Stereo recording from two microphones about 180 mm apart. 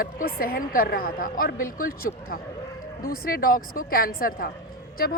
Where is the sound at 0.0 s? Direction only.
55° left (ahead or behind).